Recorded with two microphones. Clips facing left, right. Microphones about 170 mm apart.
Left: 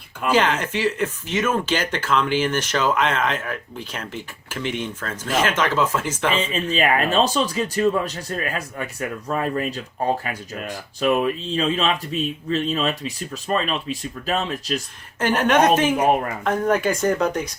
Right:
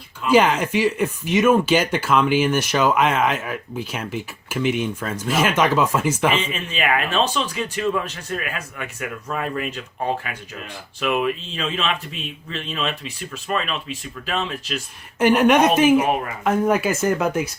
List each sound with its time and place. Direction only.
0.3 s speech: 10° right (ahead or behind)
6.3 s speech: 35° left (ahead or behind)
15.2 s speech: 10° right (ahead or behind)